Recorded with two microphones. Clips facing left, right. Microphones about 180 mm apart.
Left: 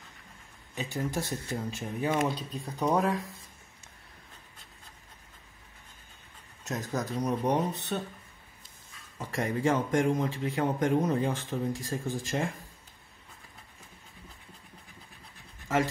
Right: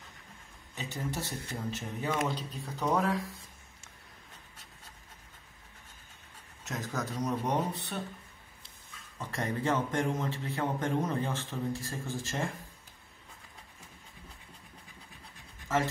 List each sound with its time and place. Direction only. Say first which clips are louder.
0.7 s a man's voice: left 4 dB; 15° left (ahead or behind)
6.7 s a man's voice: left 4 dB; 15° left (ahead or behind)
9.2 s a man's voice: left 4 dB; 10° left (ahead or behind)